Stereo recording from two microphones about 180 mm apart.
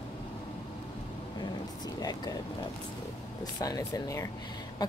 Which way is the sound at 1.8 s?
20° left (ahead or behind).